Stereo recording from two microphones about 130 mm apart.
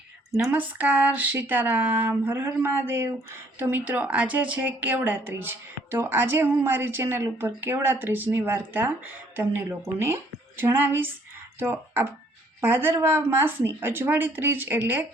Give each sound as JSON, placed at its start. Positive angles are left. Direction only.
{"t": 0.5, "sound": "speech", "side_deg": -10}